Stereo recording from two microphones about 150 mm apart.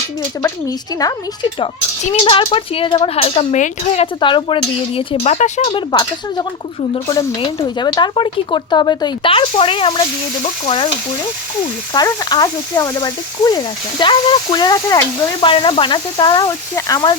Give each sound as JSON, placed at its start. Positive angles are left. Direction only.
{"t": 0.7, "sound": "speech", "side_deg": 25}
{"t": 2.0, "sound": "speech", "side_deg": 40}
{"t": 5.2, "sound": "speech", "side_deg": 50}
{"t": 5.6, "sound": "speech", "side_deg": 30}
{"t": 11.9, "sound": "speech", "side_deg": 25}
{"t": 15.4, "sound": "speech", "side_deg": 35}